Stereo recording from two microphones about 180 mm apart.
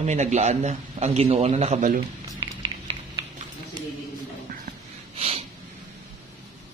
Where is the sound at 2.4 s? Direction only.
30° right (ahead or behind).